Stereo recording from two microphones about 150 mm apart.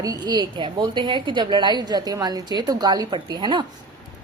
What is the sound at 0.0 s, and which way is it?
A woman's voice, 25° right (ahead or behind).